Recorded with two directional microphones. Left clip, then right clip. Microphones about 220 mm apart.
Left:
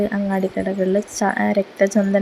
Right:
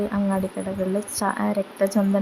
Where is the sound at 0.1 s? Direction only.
10° left (ahead or behind).